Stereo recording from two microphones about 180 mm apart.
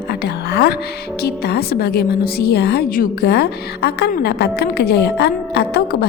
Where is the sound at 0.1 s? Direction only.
65° left (ahead or behind).